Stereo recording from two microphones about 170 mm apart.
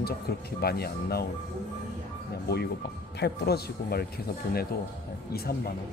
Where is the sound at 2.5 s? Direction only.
70° left (ahead or behind).